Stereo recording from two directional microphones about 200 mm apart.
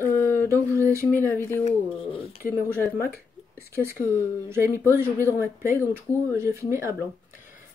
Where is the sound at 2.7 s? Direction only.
10° right (ahead or behind).